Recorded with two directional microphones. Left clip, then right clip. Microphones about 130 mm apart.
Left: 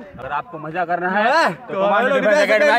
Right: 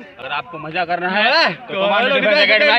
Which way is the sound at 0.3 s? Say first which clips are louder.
Right 1 dB; 15° left (ahead or behind).